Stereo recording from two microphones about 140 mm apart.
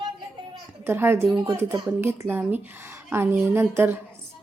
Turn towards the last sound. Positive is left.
turn(degrees=-15)  # may be behind; listen again after turning